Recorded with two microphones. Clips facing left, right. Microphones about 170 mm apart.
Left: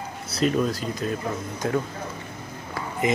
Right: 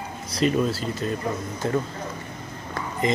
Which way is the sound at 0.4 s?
Centre (ahead or behind).